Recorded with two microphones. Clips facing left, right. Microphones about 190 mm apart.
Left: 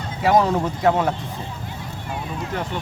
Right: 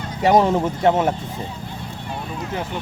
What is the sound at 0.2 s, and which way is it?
Speech, 25° right (ahead or behind).